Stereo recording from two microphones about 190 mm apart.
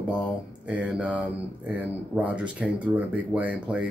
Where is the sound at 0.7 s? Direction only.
5° right (ahead or behind).